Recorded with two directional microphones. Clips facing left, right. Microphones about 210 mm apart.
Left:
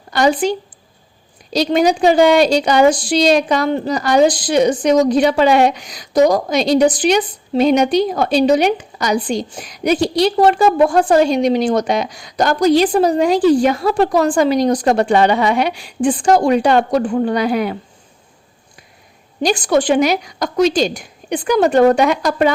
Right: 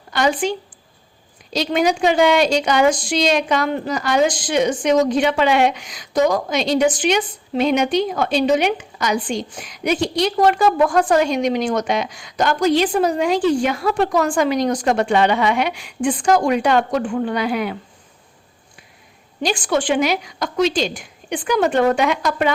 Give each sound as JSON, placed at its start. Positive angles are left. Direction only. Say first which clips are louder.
{"t": 0.1, "sound": "speech", "louder": "left 4 dB", "side_deg": 35}
{"t": 1.5, "sound": "a woman's voice", "louder": "left 4 dB", "side_deg": 35}
{"t": 19.4, "sound": "a woman's voice", "louder": "left 5 dB", "side_deg": 40}